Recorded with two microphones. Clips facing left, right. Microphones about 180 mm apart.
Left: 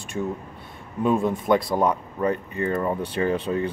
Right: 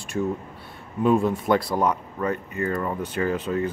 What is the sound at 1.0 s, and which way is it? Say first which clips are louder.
Speech: right 1 dB; 5° right (ahead or behind).